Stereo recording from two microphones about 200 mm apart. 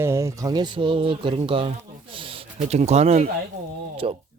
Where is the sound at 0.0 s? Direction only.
15° right (ahead or behind).